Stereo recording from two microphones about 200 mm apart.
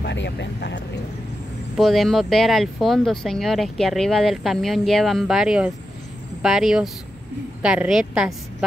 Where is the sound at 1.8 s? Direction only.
Centre (ahead or behind).